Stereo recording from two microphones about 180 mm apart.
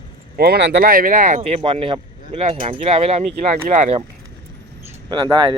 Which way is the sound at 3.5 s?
50° right (ahead or behind).